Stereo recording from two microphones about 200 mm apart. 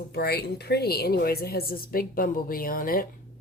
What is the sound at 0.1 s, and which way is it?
A woman's voice, 50° left (ahead or behind).